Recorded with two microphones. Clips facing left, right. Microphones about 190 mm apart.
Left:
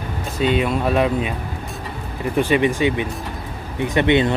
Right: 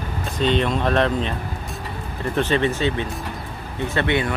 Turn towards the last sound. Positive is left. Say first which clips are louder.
# left 5 dB
turn(degrees=20)  # may be behind; listen again after turning